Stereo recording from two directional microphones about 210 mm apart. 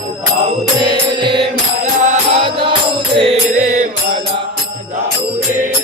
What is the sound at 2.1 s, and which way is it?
Music, 25° right (ahead or behind).